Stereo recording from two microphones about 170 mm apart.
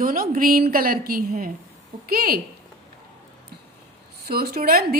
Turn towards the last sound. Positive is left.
turn(degrees=-60)  # may be behind; listen again after turning